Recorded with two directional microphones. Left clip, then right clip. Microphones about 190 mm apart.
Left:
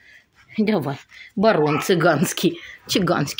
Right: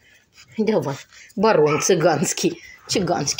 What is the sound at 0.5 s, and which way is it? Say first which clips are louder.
Speech: right 1 dB; 25° left (ahead or behind).